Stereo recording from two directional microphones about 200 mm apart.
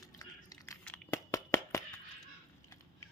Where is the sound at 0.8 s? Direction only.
10° left (ahead or behind).